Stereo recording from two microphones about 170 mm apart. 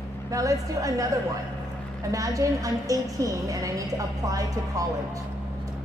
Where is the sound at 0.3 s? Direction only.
20° right (ahead or behind).